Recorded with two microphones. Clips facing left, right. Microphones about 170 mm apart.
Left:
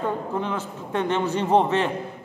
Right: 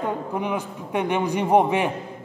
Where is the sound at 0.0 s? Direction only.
15° right (ahead or behind).